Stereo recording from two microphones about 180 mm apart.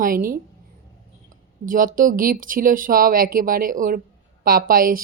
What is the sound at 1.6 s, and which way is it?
A woman's voice, 50° right (ahead or behind).